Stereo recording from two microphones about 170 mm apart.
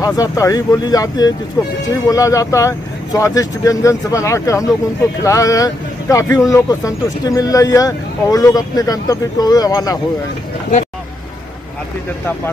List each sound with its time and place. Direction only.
0.0 s speech: 20° left (ahead or behind)